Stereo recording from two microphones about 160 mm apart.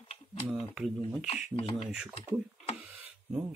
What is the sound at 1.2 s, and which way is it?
Speech, 45° left (ahead or behind).